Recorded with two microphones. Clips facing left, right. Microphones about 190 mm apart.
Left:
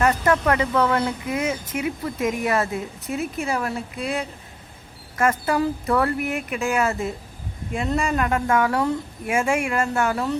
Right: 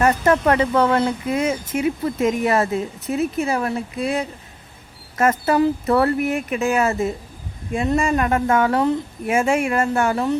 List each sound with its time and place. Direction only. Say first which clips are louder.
0.0 s speech: right 3 dB; 30° right (ahead or behind)